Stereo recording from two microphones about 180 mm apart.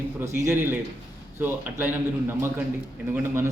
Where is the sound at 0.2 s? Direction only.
15° right (ahead or behind).